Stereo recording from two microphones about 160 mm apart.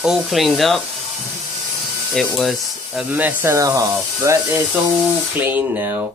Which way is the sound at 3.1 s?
15° right (ahead or behind).